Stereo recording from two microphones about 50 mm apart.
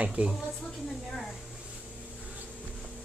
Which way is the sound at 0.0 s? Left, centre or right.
Right.